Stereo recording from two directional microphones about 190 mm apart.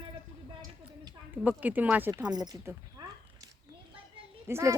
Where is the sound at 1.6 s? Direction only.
10° right (ahead or behind).